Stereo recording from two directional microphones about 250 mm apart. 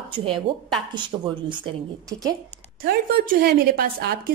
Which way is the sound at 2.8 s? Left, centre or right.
Right.